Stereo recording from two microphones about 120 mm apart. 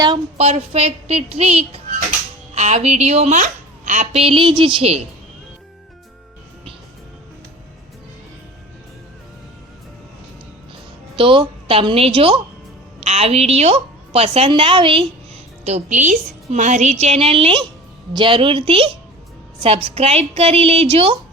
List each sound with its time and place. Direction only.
0.3 s a woman's voice: 60° right (ahead or behind)
2.6 s a woman's voice: 70° right (ahead or behind)
4.2 s a woman's voice: 45° right (ahead or behind)
11.2 s a woman's voice: 45° right (ahead or behind)
13.0 s a woman's voice: 60° right (ahead or behind); by 15.0 s 45° right (ahead or behind)
15.6 s a woman's voice: 75° right (ahead or behind)
17.0 s a woman's voice: 60° right (ahead or behind)